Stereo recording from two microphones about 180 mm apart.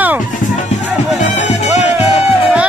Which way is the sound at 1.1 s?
40° left (ahead or behind).